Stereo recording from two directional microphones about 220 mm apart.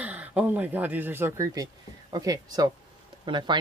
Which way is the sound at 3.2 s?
20° right (ahead or behind).